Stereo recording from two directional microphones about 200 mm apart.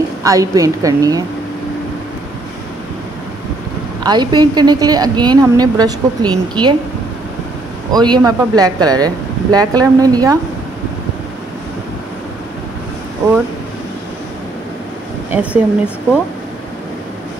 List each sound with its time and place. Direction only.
0.2 s a woman's voice: 15° right (ahead or behind)
4.0 s speech: 20° right (ahead or behind)
7.9 s speech: 20° right (ahead or behind)
15.3 s a woman's voice: 5° right (ahead or behind)